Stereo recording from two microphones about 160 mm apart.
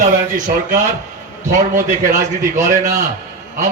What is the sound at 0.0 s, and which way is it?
Speech, 50° right (ahead or behind).